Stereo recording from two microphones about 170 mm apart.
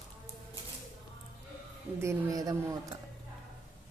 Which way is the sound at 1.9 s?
20° right (ahead or behind).